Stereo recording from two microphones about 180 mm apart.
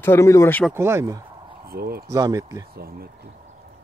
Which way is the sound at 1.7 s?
60° right (ahead or behind).